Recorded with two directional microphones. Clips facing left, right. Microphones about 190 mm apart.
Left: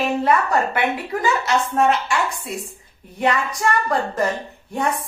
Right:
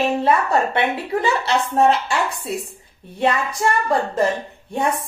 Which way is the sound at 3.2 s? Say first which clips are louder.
Right 1 dB; 25° right (ahead or behind).